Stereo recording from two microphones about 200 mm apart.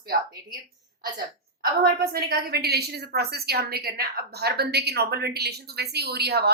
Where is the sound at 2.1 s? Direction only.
50° right (ahead or behind).